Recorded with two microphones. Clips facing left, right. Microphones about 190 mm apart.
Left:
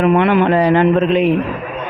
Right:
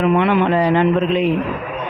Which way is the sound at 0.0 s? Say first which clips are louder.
Left 3 dB; 60° left (ahead or behind).